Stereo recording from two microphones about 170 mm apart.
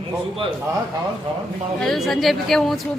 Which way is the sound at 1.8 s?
Centre (ahead or behind).